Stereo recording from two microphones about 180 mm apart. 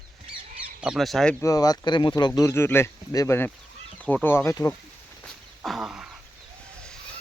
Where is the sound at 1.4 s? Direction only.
20° left (ahead or behind).